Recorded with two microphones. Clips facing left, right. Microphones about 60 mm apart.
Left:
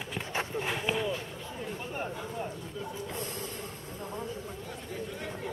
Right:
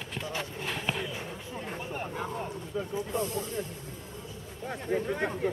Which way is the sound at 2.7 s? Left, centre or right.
Right.